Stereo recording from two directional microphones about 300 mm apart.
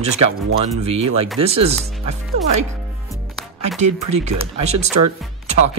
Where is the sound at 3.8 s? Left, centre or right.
Right.